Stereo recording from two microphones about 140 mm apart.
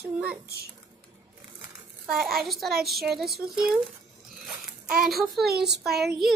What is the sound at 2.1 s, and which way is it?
A child's voice, centre (ahead or behind).